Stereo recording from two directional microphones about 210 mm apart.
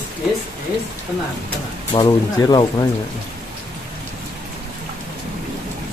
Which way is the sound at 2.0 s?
20° left (ahead or behind).